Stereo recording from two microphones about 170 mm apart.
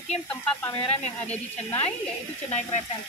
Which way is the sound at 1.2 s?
10° left (ahead or behind).